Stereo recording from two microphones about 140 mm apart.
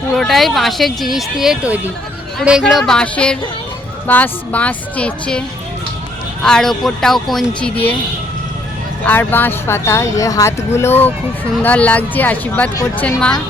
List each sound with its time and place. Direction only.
0.2 s speech: centre (ahead or behind)
6.4 s speech: 5° left (ahead or behind)
9.0 s speech: 15° left (ahead or behind)